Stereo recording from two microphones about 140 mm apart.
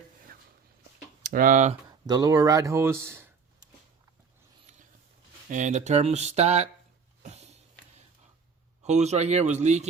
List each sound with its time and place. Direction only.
1.2 s speech: 85° right; by 1.7 s 65° right (ahead or behind)
1.9 s speech: 30° right (ahead or behind)
4.7 s a sound: 60° right (ahead or behind)
5.5 s speech: 60° right (ahead or behind)
7.2 s a sound: 50° right (ahead or behind)
8.8 s speech: 55° right (ahead or behind)